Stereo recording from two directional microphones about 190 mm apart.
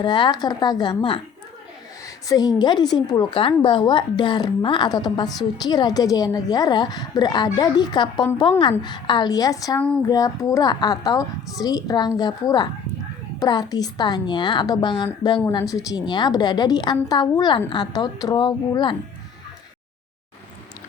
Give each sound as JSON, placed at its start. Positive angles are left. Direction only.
{"t": 0.0, "sound": "a woman's voice", "side_deg": 25}